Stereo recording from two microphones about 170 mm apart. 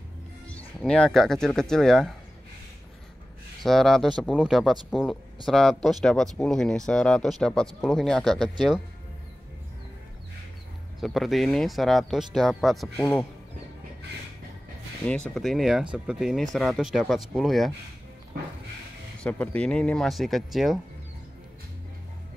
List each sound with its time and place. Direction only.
0.5 s speech: 5° left (ahead or behind)
3.6 s speech: centre (ahead or behind)
11.0 s speech: centre (ahead or behind)
15.0 s speech: 5° left (ahead or behind)
19.2 s speech: 5° left (ahead or behind)